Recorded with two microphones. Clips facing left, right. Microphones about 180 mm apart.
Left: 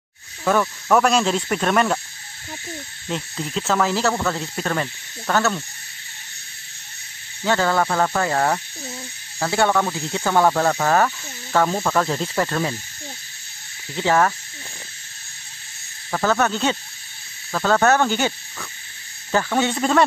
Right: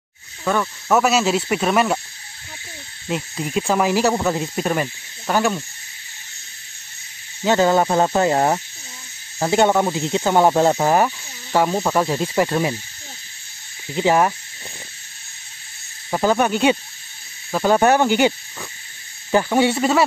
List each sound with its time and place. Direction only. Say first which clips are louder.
0.5 s speech: left 1 dB; centre (ahead or behind)
3.1 s speech: right 3 dB; 10° right (ahead or behind)
7.4 s speech: right 4 dB; 20° right (ahead or behind)
13.9 s speech: right 2 dB; 15° right (ahead or behind)
16.1 s speech: right 2 dB; 15° right (ahead or behind)